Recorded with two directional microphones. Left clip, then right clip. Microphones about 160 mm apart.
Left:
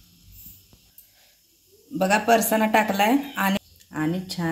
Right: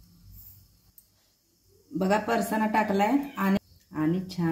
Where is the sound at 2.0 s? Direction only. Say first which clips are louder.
Left 6 dB; 25° left (ahead or behind).